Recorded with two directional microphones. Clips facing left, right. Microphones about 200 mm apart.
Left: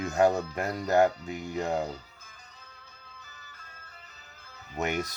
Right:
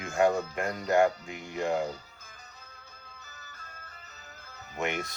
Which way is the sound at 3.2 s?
45° right (ahead or behind).